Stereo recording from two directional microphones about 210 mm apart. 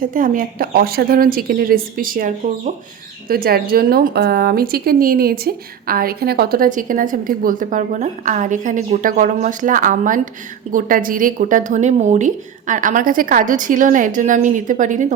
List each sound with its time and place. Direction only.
0.1 s a woman's voice: 40° right (ahead or behind)